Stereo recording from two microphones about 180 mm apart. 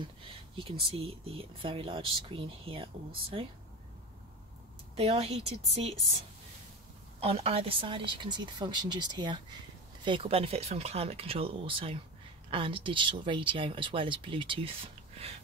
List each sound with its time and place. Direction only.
0.6 s speech: 30° right (ahead or behind)
4.9 s speech: 35° right (ahead or behind)